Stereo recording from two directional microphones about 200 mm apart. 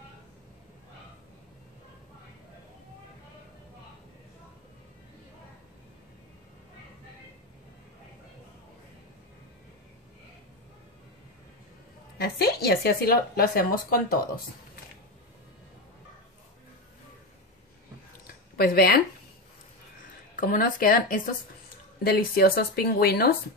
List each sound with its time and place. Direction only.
12.2 s speech: 50° left (ahead or behind)
18.2 s a sound: 50° left (ahead or behind)
20.3 s speech: 45° left (ahead or behind)